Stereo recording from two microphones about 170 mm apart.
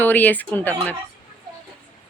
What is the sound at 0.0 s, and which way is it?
Speech, 10° left (ahead or behind).